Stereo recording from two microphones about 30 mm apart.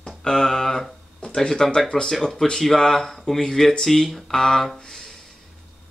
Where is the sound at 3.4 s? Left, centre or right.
Left.